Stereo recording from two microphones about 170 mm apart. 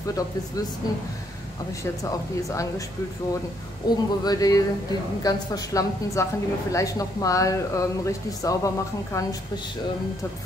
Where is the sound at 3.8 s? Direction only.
20° left (ahead or behind).